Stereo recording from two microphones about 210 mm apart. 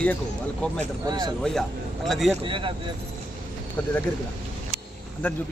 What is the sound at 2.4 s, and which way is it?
Speech, 25° right (ahead or behind).